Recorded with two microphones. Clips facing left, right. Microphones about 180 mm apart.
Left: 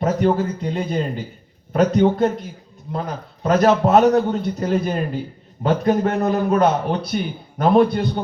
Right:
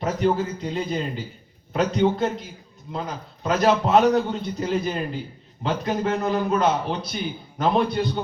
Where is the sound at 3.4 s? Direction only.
45° left (ahead or behind).